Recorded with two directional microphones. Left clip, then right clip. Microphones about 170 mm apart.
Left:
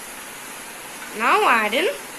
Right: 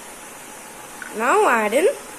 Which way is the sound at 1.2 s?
55° right (ahead or behind).